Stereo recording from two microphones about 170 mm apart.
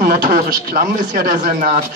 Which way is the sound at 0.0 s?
55° right (ahead or behind).